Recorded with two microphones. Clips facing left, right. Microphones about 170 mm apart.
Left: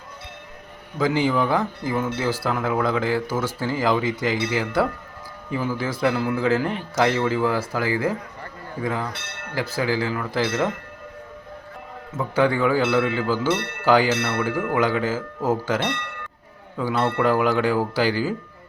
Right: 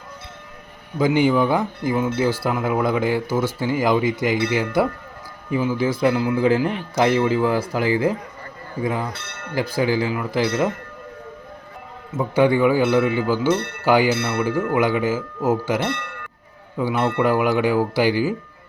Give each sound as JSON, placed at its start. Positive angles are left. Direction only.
{"t": 0.9, "sound": "speech", "side_deg": -15}
{"t": 12.1, "sound": "speech", "side_deg": -15}